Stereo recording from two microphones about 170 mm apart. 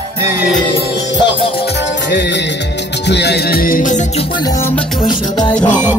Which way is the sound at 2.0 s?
90° left.